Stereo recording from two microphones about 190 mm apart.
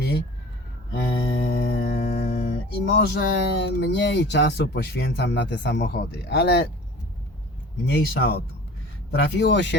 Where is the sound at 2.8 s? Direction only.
60° left (ahead or behind).